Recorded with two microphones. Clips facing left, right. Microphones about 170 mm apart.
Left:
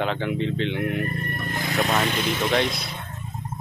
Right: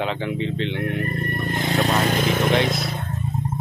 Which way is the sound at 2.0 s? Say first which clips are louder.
Right 4 dB; 45° right (ahead or behind).